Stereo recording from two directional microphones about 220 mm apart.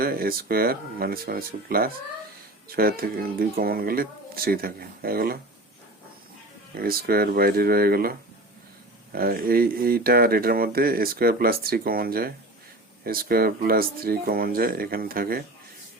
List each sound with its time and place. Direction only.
0.0 s speech: 40° right (ahead or behind)
6.7 s speech: 45° right (ahead or behind)
9.1 s speech: 45° right (ahead or behind)